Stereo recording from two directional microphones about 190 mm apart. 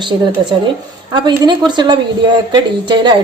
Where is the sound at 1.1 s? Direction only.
25° right (ahead or behind).